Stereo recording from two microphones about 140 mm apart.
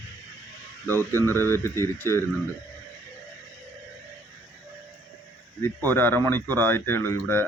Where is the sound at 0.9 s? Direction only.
15° left (ahead or behind).